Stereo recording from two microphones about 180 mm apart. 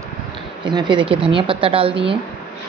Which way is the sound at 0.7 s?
25° right (ahead or behind).